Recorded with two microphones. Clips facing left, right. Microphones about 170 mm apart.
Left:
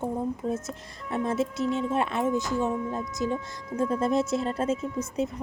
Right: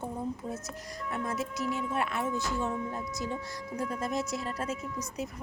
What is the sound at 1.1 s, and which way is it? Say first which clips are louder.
Speech: left 7 dB; 30° left (ahead or behind).